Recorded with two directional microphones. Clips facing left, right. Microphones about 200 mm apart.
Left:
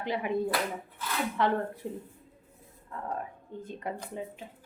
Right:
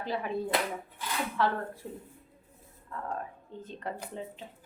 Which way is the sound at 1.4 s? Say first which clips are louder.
Left 2 dB; 20° left (ahead or behind).